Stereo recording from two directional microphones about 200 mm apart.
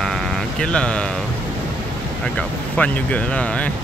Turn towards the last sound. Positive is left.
turn(degrees=5)  # may be behind; listen again after turning